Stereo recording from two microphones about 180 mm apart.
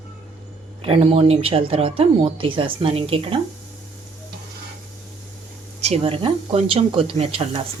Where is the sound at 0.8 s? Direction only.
35° right (ahead or behind).